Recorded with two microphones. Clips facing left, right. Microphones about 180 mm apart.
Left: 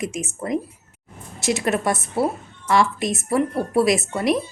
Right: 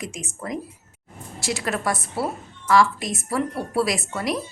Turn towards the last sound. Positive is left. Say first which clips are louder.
# left 6 dB
turn(degrees=25)  # may be behind; listen again after turning